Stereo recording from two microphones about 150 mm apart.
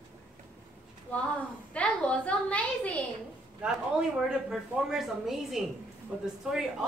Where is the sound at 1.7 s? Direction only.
10° left (ahead or behind).